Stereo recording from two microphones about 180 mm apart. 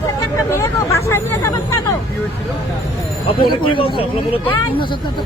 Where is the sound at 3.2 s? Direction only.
30° left (ahead or behind).